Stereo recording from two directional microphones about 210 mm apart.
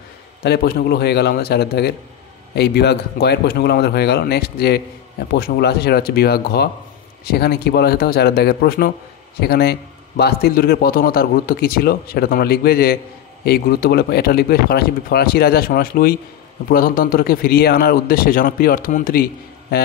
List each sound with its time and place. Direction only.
0.4 s a man's voice: 50° left (ahead or behind)